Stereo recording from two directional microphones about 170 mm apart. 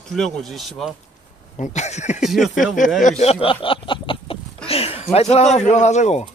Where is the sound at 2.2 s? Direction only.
Centre (ahead or behind).